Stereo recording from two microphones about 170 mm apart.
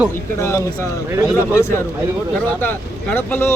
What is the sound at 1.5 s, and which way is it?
A man's voice, 15° left (ahead or behind).